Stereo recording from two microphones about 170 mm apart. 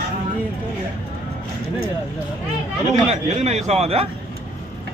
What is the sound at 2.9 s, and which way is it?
A man's voice, 40° right (ahead or behind).